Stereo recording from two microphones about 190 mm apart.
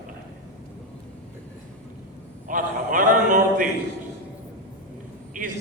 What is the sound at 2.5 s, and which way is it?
A man's voice, 45° right (ahead or behind).